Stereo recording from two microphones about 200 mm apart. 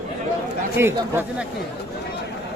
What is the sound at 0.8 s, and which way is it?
Speech, 10° right (ahead or behind).